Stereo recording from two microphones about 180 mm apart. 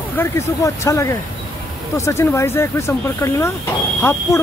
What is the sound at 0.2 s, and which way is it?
Speech, 15° left (ahead or behind).